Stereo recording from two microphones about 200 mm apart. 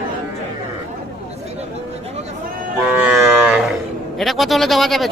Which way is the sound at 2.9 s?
10° right (ahead or behind).